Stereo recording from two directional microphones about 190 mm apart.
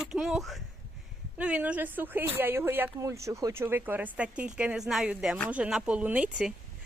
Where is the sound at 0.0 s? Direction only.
5° right (ahead or behind).